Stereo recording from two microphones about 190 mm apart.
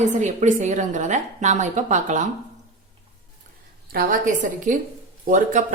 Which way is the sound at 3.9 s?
50° right (ahead or behind).